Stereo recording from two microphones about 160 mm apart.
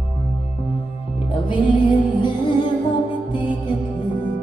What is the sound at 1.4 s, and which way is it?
Music, 30° left (ahead or behind).